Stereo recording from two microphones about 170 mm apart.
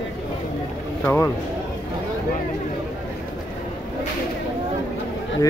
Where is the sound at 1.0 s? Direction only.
15° left (ahead or behind).